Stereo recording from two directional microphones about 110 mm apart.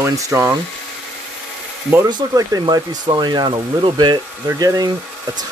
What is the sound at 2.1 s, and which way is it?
Speech, 35° right (ahead or behind).